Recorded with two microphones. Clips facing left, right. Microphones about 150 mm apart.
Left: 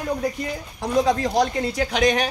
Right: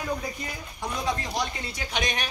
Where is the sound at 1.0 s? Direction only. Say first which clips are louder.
Left 8 dB; 90° left.